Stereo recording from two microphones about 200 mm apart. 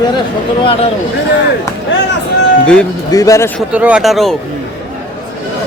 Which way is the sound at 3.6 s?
5° right (ahead or behind).